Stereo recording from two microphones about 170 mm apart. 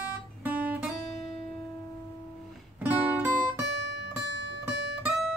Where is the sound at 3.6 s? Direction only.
90° right.